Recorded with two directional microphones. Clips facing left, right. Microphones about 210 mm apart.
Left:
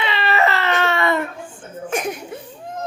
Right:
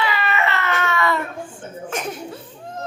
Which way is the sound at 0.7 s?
30° left (ahead or behind).